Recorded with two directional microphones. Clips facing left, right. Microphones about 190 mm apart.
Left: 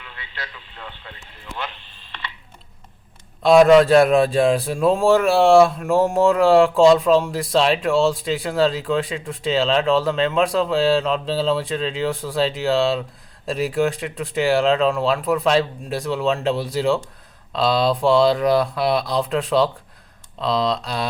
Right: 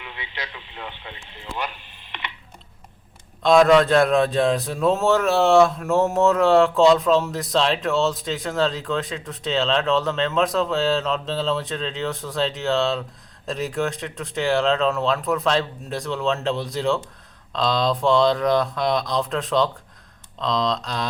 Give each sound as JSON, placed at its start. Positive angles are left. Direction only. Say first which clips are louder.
{"t": 0.0, "sound": "speech", "louder": "right 2 dB", "side_deg": -20}
{"t": 1.5, "sound": "a sound", "louder": "right 1 dB", "side_deg": -15}
{"t": 3.4, "sound": "speech", "louder": "left 3 dB", "side_deg": 10}